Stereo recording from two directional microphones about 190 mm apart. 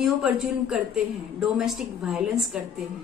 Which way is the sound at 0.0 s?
Centre (ahead or behind).